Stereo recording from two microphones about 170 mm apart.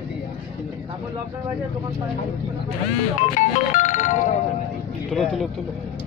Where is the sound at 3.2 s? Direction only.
45° left (ahead or behind).